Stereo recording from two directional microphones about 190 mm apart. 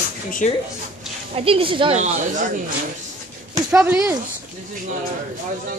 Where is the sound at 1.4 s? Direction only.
30° right (ahead or behind).